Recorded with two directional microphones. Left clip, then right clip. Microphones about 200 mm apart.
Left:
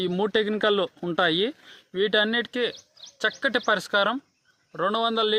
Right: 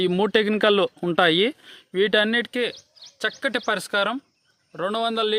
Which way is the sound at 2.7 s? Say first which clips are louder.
Right 1 dB; 40° right (ahead or behind).